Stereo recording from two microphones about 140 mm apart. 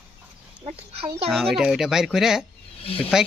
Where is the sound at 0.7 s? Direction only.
45° right (ahead or behind).